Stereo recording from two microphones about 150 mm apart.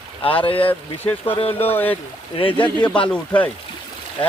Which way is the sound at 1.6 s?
15° left (ahead or behind).